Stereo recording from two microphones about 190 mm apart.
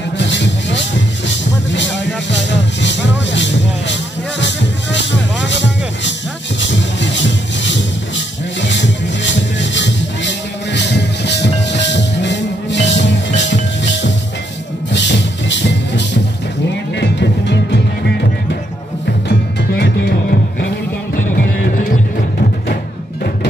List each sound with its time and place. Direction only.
0.2 s music: 70° left (ahead or behind)
14.9 s music: 65° left (ahead or behind)
19.2 s music: 60° left (ahead or behind)